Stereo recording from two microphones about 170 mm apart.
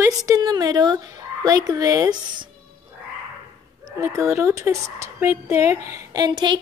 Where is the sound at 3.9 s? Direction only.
15° right (ahead or behind).